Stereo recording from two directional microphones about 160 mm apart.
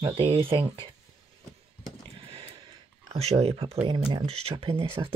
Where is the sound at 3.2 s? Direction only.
40° right (ahead or behind).